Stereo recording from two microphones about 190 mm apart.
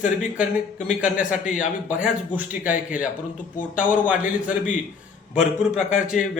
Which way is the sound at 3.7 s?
45° left (ahead or behind).